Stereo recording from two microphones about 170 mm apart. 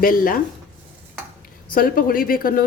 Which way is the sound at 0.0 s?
55° left (ahead or behind).